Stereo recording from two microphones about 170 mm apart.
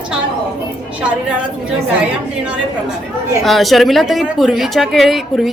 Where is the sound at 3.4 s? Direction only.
Centre (ahead or behind).